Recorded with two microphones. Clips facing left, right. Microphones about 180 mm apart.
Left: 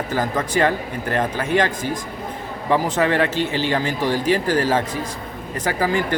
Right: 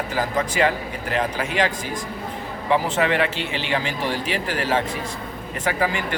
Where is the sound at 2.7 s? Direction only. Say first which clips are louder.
Left 2 dB; 45° left (ahead or behind).